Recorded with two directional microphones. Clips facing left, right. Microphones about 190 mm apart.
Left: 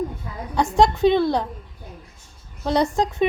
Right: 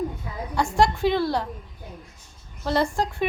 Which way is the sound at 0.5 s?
20° left (ahead or behind).